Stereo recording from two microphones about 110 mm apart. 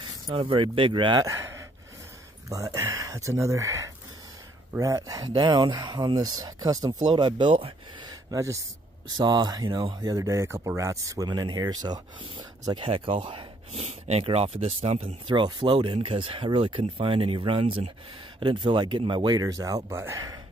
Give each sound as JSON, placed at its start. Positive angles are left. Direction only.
{"t": 0.3, "sound": "speech", "side_deg": -50}
{"t": 1.2, "sound": "gasp", "side_deg": -30}
{"t": 2.5, "sound": "speech", "side_deg": -30}
{"t": 8.1, "sound": "a sound", "side_deg": -35}
{"t": 9.1, "sound": "speech", "side_deg": -40}
{"t": 11.2, "sound": "speech", "side_deg": -40}
{"t": 12.8, "sound": "speech", "side_deg": -55}
{"t": 13.7, "sound": "speech", "side_deg": -75}
{"t": 14.2, "sound": "speech", "side_deg": -65}
{"t": 15.2, "sound": "speech", "side_deg": -45}